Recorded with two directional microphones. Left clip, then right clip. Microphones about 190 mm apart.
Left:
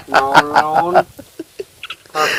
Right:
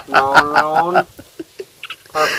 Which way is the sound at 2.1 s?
25° left (ahead or behind).